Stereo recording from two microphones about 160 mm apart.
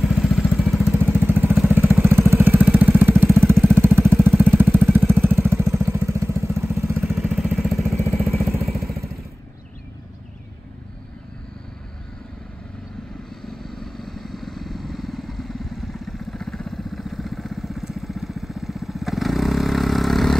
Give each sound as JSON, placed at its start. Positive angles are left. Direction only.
{"t": 0.0, "sound": "vehicle", "side_deg": 0}
{"t": 7.0, "sound": "vehicle", "side_deg": -5}
{"t": 13.5, "sound": "vehicle", "side_deg": 0}